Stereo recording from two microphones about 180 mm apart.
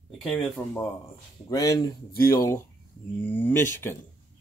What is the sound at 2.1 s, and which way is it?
Speech, 55° left (ahead or behind).